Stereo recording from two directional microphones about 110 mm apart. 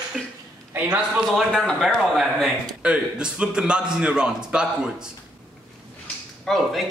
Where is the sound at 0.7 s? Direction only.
10° right (ahead or behind).